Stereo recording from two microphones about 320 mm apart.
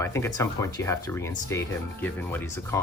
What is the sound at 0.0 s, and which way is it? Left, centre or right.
Speech, centre.